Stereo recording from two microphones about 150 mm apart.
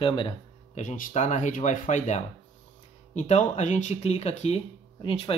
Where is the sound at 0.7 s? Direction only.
60° left (ahead or behind).